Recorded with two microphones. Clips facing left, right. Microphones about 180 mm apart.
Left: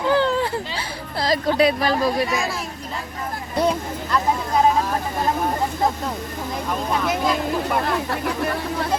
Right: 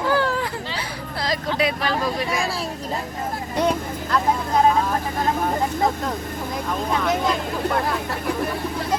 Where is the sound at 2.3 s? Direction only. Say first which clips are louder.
Even; 30° right (ahead or behind).